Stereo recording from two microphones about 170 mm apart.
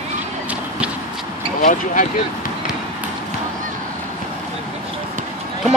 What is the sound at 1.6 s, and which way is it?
Speech, 50° left (ahead or behind).